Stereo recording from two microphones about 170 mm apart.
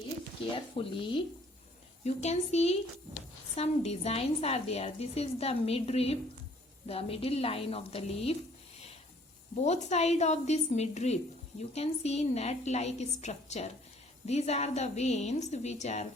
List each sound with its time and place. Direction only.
0.5 s a woman's voice: 30° left (ahead or behind)
2.0 s a woman's voice: 40° left (ahead or behind)
9.6 s a woman's voice: 40° left (ahead or behind)